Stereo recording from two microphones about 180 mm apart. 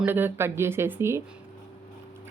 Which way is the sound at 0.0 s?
10° right (ahead or behind).